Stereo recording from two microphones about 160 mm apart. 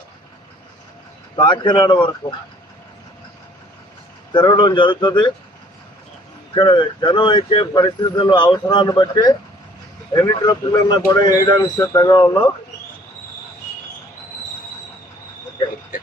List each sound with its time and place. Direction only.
1.4 s speech: 30° left (ahead or behind)
4.3 s speech: 30° left (ahead or behind)
6.5 s speech: 30° left (ahead or behind)